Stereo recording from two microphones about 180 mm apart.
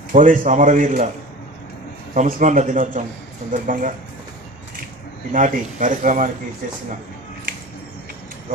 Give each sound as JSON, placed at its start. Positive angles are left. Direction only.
{"t": 0.1, "sound": "speech", "side_deg": -45}
{"t": 2.1, "sound": "speech", "side_deg": -45}
{"t": 5.3, "sound": "speech", "side_deg": -45}